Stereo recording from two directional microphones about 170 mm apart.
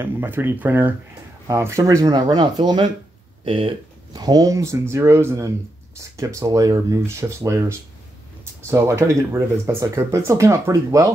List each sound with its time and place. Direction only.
0.0 s speech: 10° right (ahead or behind)